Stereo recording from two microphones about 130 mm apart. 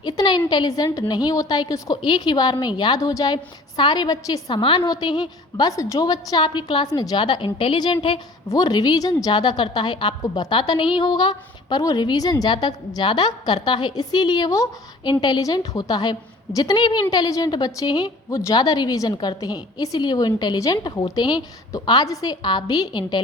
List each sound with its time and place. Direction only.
0.0 s a woman's voice: 35° left (ahead or behind)
8.4 s a woman's voice: 30° left (ahead or behind)